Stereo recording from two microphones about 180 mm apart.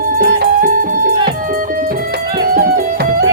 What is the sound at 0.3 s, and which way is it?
Music, 55° right (ahead or behind).